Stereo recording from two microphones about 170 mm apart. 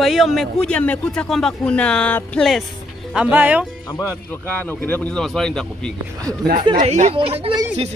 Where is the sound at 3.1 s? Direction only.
5° right (ahead or behind).